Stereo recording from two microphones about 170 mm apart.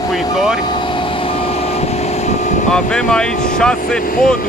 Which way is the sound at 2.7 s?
5° left (ahead or behind).